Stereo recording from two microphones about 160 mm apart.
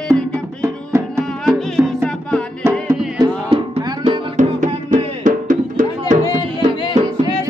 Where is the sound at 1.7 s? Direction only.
5° left (ahead or behind).